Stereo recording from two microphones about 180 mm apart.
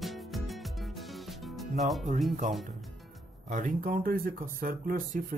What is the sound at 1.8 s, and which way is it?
Speech, centre (ahead or behind).